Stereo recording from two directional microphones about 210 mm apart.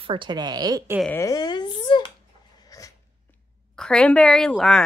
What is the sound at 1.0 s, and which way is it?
Speech, 10° left (ahead or behind).